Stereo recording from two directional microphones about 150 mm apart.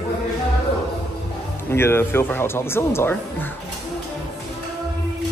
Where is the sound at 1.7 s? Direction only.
15° left (ahead or behind).